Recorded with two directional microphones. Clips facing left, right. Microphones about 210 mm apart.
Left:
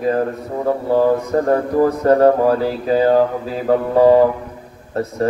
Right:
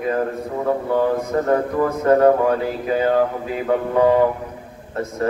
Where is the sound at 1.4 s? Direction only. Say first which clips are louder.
Left 4 dB; 35° left (ahead or behind).